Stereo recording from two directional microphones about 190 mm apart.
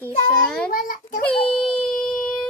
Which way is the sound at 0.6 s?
45° left (ahead or behind).